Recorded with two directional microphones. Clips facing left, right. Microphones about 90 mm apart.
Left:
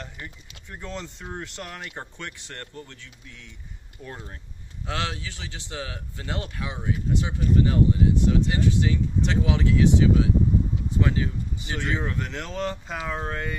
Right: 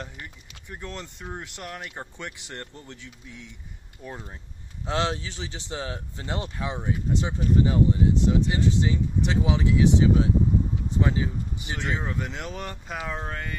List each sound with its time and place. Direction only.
0.7 s speech: 5° right (ahead or behind)
2.1 s speech: 15° right (ahead or behind)
4.0 s speech: 10° right (ahead or behind)
4.8 s speech: 25° right (ahead or behind)
11.0 s speech: 20° right (ahead or behind); by 13.6 s 5° left (ahead or behind)